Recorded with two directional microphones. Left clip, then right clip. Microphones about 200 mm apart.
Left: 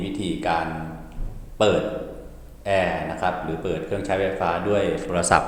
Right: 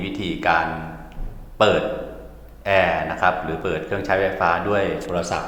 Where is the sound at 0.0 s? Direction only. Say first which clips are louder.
Right 3 dB; centre (ahead or behind).